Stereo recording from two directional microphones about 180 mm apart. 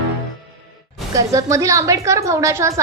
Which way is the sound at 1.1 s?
20° right (ahead or behind).